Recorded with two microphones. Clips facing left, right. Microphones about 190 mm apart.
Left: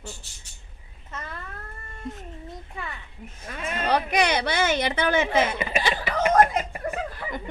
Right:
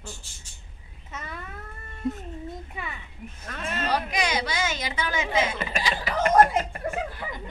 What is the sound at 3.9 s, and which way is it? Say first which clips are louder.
A woman's voice: left 5 dB; 60° left (ahead or behind).